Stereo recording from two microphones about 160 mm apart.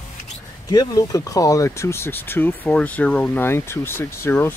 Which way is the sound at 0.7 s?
20° left (ahead or behind).